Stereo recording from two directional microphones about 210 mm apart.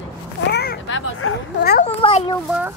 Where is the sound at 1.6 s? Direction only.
50° left (ahead or behind).